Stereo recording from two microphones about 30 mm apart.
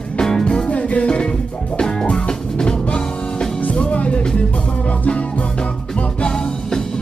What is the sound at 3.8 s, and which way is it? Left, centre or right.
Music, left.